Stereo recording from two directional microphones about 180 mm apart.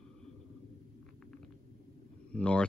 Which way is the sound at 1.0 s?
5° left (ahead or behind).